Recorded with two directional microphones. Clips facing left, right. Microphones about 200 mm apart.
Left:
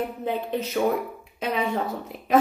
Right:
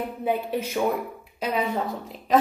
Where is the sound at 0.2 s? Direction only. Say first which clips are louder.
Right 1 dB; 10° right (ahead or behind).